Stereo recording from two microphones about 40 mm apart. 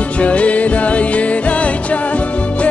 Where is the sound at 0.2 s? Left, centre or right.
Left.